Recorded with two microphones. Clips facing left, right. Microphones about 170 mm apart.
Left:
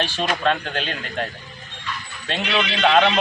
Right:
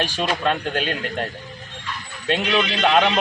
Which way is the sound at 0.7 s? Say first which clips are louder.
Right 3 dB; 45° right (ahead or behind).